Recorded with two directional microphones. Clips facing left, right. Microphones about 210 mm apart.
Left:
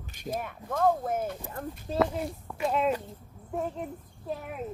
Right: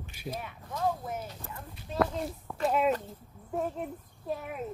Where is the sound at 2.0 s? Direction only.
5° left (ahead or behind).